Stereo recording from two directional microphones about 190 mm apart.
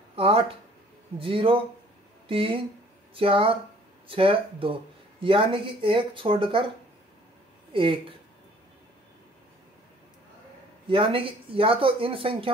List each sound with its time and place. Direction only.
0.1 s speech: 30° right (ahead or behind)
7.7 s speech: 25° right (ahead or behind)
10.9 s speech: 30° right (ahead or behind)